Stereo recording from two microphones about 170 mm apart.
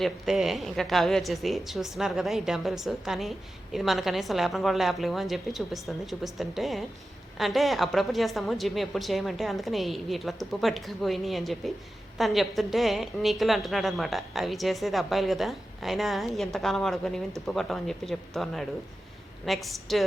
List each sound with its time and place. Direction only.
0.0 s a woman's voice: centre (ahead or behind)